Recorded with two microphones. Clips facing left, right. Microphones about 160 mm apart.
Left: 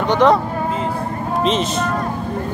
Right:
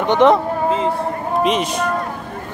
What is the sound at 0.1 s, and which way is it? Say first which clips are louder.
Speech: right 1 dB; 20° right (ahead or behind).